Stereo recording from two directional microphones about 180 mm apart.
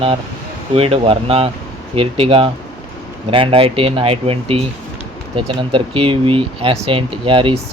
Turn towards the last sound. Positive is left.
turn(degrees=-30)  # may be behind; listen again after turning